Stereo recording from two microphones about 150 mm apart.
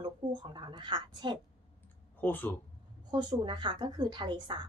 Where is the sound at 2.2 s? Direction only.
10° left (ahead or behind).